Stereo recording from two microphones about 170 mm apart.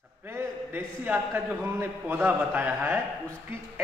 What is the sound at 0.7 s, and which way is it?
A man's voice, 10° right (ahead or behind).